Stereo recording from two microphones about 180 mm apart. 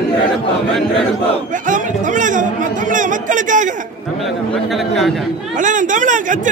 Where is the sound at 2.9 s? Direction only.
45° right (ahead or behind).